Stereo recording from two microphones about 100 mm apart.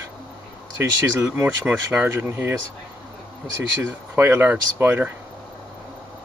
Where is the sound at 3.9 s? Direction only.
25° right (ahead or behind).